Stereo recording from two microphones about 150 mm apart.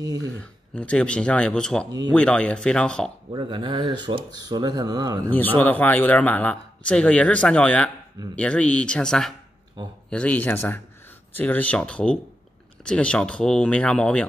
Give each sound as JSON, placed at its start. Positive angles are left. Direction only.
{"t": 0.4, "sound": "speech", "side_deg": 10}
{"t": 1.9, "sound": "speech", "side_deg": -25}
{"t": 2.1, "sound": "speech", "side_deg": 5}
{"t": 3.3, "sound": "speech", "side_deg": -35}
{"t": 5.3, "sound": "speech", "side_deg": 10}